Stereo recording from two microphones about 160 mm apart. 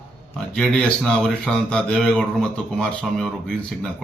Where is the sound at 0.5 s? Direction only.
5° left (ahead or behind).